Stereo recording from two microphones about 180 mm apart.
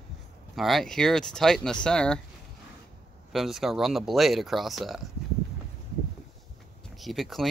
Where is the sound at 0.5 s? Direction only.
Centre (ahead or behind).